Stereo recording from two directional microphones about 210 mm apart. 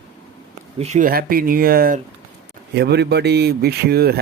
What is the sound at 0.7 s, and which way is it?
A man's voice, 30° right (ahead or behind).